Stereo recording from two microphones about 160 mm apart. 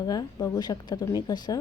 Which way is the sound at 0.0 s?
25° left (ahead or behind).